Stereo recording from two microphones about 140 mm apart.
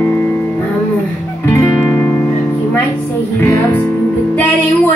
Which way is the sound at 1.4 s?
15° left (ahead or behind).